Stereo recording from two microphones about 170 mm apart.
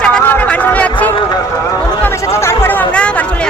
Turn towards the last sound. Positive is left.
turn(degrees=5)  # may be behind; listen again after turning